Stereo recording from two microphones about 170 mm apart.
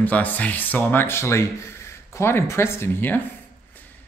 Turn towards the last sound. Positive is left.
turn(degrees=10)  # may be behind; listen again after turning